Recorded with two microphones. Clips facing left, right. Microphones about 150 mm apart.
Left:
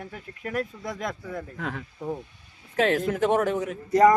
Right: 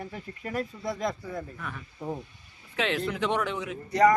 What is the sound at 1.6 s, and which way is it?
Speech, 90° left.